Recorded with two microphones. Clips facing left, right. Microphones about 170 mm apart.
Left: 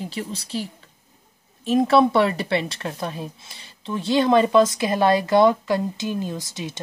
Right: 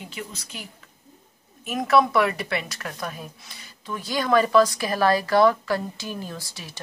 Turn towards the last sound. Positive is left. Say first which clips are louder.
# left 7 dB
turn(degrees=20)  # may be behind; listen again after turning